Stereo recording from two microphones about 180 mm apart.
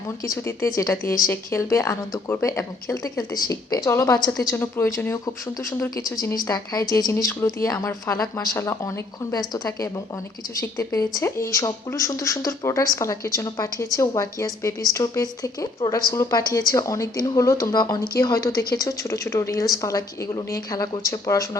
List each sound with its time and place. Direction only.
0.3 s speech: 15° left (ahead or behind)